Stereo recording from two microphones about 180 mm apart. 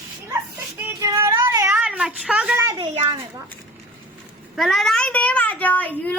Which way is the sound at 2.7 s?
30° right (ahead or behind).